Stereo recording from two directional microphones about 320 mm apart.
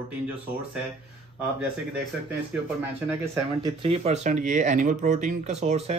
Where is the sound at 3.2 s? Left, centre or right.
Centre.